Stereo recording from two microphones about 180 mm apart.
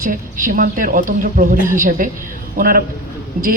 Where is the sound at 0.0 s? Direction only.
50° right (ahead or behind).